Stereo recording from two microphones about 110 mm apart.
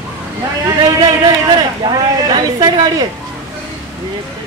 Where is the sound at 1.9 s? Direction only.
35° right (ahead or behind).